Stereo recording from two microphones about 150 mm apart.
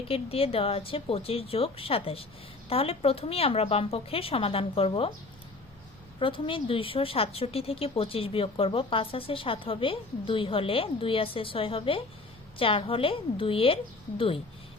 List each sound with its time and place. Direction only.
0.1 s a woman's voice: 40° left (ahead or behind)
6.1 s a woman's voice: 35° left (ahead or behind)